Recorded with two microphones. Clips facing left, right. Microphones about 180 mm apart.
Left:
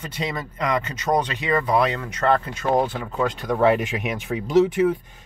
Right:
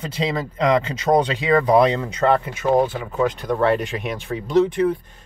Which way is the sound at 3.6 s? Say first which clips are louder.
Left 1 dB; 10° left (ahead or behind).